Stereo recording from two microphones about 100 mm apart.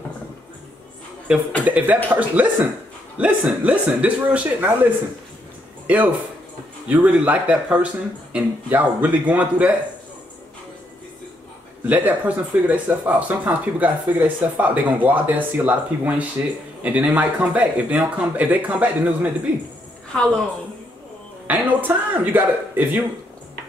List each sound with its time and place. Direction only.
1.6 s speech: 15° right (ahead or behind)
5.9 s speech: 15° right (ahead or behind)
11.8 s speech: 15° right (ahead or behind)
21.5 s speech: 15° right (ahead or behind)